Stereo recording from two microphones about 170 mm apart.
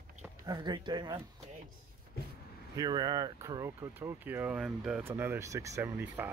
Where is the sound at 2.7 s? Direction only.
20° right (ahead or behind).